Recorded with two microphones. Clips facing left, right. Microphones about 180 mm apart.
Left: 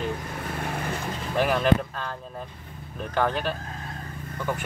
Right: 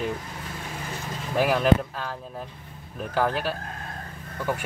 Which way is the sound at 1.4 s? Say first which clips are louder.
Right 1 dB; 5° right (ahead or behind).